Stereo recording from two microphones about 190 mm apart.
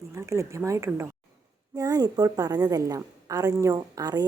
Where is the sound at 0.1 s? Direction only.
15° right (ahead or behind).